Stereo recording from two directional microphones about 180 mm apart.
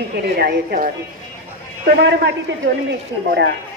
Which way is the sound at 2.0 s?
70° right (ahead or behind).